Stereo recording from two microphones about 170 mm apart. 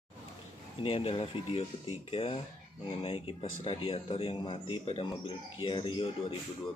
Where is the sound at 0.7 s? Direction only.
30° left (ahead or behind).